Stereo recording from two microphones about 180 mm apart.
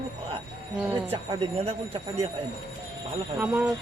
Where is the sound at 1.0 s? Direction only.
30° right (ahead or behind).